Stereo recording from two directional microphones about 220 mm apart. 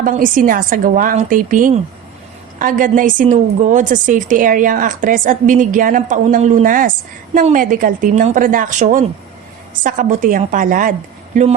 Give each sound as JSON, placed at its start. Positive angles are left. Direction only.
{"t": 0.0, "sound": "a woman's voice", "side_deg": -35}